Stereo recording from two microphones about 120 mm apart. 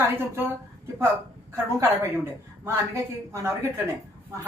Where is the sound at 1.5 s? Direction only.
20° right (ahead or behind).